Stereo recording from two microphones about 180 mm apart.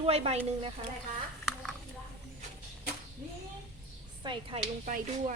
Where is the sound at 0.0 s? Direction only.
35° right (ahead or behind).